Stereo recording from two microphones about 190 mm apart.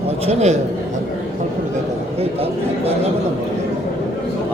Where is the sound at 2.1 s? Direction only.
30° right (ahead or behind).